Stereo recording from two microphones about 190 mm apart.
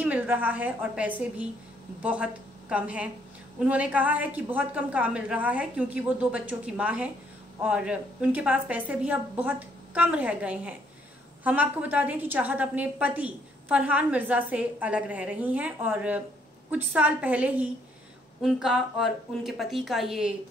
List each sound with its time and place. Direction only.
0.0 s a woman's voice: 10° right (ahead or behind)